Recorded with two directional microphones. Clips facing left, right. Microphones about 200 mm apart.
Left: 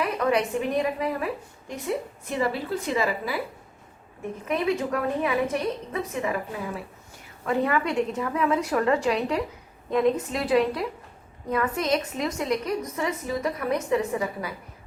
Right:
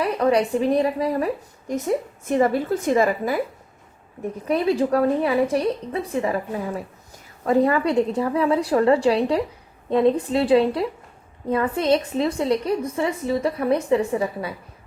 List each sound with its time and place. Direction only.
0.0 s a woman's voice: 35° right (ahead or behind)
4.4 s a woman's voice: 35° right (ahead or behind)